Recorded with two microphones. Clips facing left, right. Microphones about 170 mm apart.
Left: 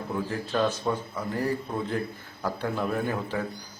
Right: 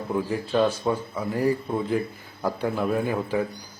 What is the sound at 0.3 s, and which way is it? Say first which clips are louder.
Speech: right 4 dB; 10° right (ahead or behind).